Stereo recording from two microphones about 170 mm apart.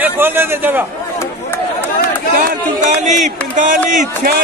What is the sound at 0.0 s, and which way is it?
Speech, 10° right (ahead or behind).